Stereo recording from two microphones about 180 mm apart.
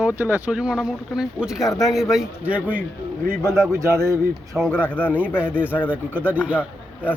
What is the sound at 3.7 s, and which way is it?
Speech, 15° right (ahead or behind).